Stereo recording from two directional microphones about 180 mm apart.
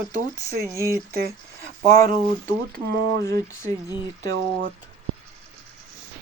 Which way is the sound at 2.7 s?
65° right (ahead or behind).